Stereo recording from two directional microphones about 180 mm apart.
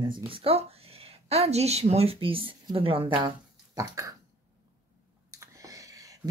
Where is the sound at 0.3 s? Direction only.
30° right (ahead or behind).